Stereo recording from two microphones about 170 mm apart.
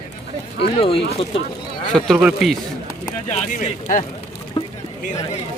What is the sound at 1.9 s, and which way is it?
Speech, centre (ahead or behind).